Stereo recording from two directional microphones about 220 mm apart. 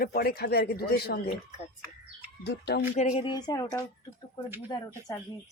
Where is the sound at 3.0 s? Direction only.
30° left (ahead or behind).